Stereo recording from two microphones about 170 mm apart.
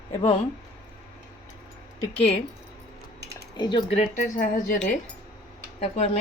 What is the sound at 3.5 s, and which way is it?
Speech, 25° left (ahead or behind).